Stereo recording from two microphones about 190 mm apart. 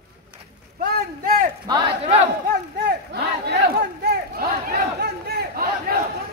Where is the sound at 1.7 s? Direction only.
20° right (ahead or behind).